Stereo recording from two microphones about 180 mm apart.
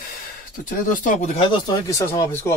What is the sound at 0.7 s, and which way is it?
Speech, 45° left (ahead or behind).